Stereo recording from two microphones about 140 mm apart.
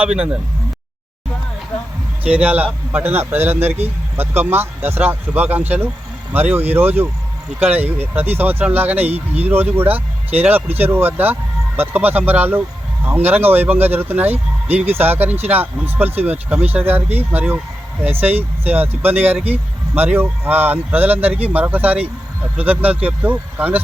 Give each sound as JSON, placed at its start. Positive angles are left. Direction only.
{"t": 0.0, "sound": "speech", "side_deg": -10}
{"t": 2.2, "sound": "speech", "side_deg": -10}